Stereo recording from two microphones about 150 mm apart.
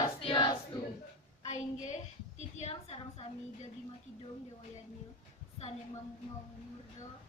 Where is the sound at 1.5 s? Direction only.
50° left (ahead or behind).